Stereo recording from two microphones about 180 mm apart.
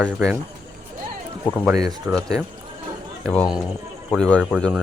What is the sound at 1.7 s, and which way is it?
Speech, 20° right (ahead or behind).